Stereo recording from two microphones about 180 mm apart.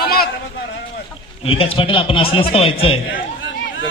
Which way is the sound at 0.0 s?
55° left (ahead or behind).